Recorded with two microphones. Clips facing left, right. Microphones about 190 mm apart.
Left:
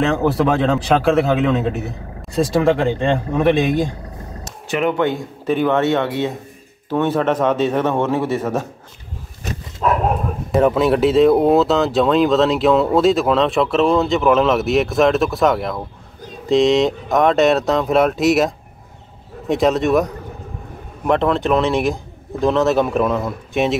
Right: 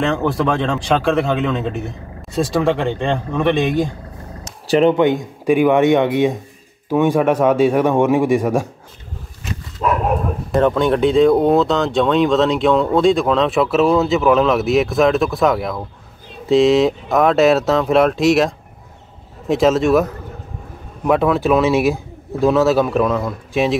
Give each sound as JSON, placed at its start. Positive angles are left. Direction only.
{"t": 0.0, "sound": "speech", "side_deg": 5}
{"t": 4.6, "sound": "speech", "side_deg": -35}
{"t": 4.9, "sound": "speech", "side_deg": -15}
{"t": 10.5, "sound": "speech", "side_deg": 5}